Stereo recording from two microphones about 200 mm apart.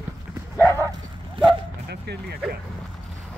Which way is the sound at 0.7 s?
15° right (ahead or behind).